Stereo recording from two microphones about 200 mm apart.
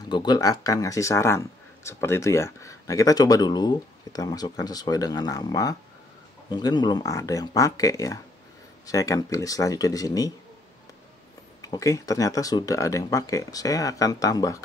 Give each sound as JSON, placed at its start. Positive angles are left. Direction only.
{"t": 0.1, "sound": "speech", "side_deg": 20}
{"t": 11.6, "sound": "speech", "side_deg": 15}